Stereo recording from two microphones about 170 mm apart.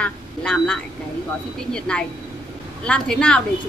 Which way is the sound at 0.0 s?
5° left (ahead or behind).